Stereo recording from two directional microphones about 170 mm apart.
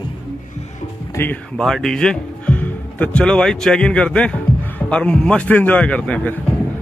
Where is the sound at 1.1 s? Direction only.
10° left (ahead or behind).